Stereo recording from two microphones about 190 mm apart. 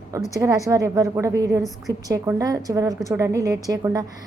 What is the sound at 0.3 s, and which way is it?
A woman's voice, 15° right (ahead or behind).